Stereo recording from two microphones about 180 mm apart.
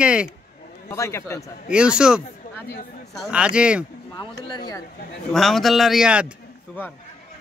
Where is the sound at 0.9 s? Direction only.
15° left (ahead or behind).